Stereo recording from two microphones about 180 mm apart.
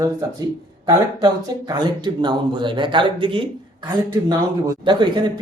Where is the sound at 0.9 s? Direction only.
25° right (ahead or behind).